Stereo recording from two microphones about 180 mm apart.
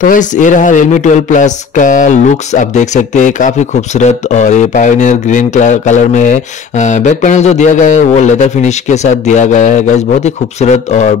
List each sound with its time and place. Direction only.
0.0 s speech: 45° left (ahead or behind)